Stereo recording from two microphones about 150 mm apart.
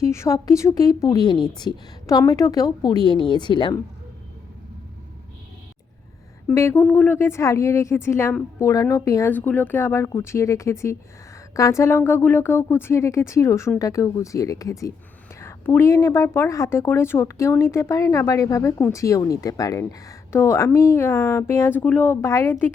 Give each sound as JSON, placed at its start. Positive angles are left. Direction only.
{"t": 0.1, "sound": "a woman's voice", "side_deg": 20}
{"t": 6.5, "sound": "a woman's voice", "side_deg": 20}